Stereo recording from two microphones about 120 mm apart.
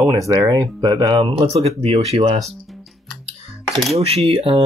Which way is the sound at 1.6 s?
55° right (ahead or behind).